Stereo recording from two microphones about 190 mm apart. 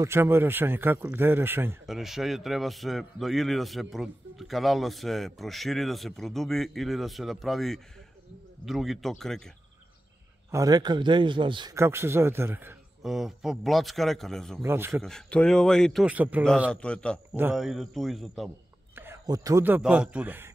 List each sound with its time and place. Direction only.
0.0 s a man's voice: 15° right (ahead or behind)
10.5 s a man's voice: 20° right (ahead or behind)
13.0 s a man's voice: centre (ahead or behind)
14.6 s a man's voice: 15° right (ahead or behind)
15.0 s a man's voice: 5° left (ahead or behind)
16.7 s a man's voice: 5° left (ahead or behind)
17.3 s a man's voice: 10° right (ahead or behind)
18.9 s a man's voice: 15° right (ahead or behind)